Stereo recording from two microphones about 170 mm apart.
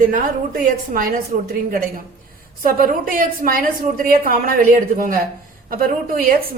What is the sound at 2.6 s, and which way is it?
A woman's voice, 60° right (ahead or behind).